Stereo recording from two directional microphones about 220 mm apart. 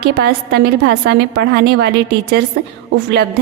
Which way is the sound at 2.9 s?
50° right (ahead or behind).